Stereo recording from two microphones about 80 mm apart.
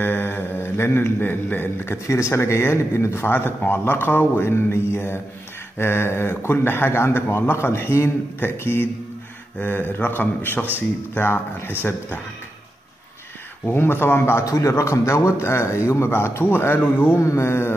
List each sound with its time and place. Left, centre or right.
0.0 s speech: left
2.0 s a man's voice: left
13.7 s a man's voice: left
14.4 s a man's voice: left